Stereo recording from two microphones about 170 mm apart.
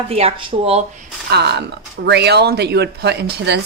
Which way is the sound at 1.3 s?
80° right.